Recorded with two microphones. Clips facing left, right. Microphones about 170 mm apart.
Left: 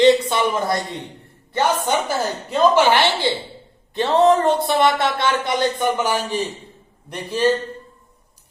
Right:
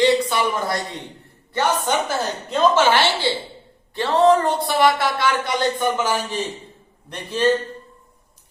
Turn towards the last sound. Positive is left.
turn(degrees=10)  # may be behind; listen again after turning